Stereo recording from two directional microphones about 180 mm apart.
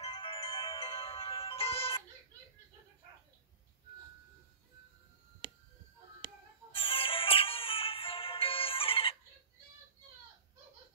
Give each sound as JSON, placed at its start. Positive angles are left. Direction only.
{"t": 0.0, "sound": "music", "side_deg": 30}
{"t": 6.7, "sound": "music", "side_deg": 30}